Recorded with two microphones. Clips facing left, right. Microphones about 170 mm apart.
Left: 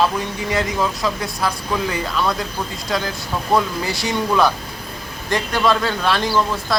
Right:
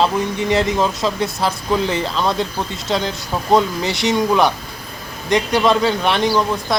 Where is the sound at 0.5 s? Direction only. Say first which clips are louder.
Right 3 dB; 25° right (ahead or behind).